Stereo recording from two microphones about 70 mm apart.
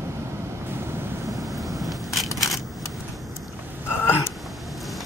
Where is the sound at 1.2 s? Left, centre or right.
Right.